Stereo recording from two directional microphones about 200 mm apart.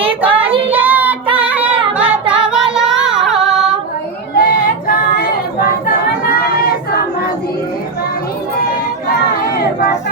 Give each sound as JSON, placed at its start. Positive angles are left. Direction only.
{"t": 0.2, "sound": "child singing", "side_deg": -10}
{"t": 1.4, "sound": "music", "side_deg": -5}
{"t": 4.4, "sound": "female singing", "side_deg": 45}